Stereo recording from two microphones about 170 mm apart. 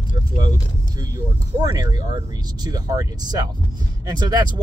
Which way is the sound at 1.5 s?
25° right (ahead or behind).